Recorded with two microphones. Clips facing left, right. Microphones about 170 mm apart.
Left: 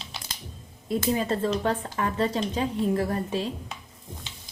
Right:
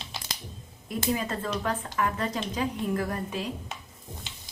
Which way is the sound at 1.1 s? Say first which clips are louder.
Left 4 dB; 30° left (ahead or behind).